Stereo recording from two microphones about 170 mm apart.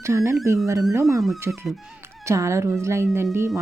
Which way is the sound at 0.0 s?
15° right (ahead or behind).